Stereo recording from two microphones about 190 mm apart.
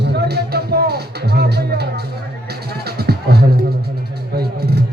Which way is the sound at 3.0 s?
55° right (ahead or behind).